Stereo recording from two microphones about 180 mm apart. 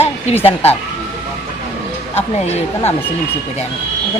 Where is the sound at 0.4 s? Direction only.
35° left (ahead or behind).